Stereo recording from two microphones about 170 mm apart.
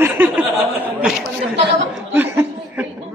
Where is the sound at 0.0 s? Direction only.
10° right (ahead or behind).